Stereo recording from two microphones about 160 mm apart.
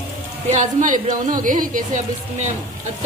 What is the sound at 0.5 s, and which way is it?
A woman's voice, 50° right (ahead or behind).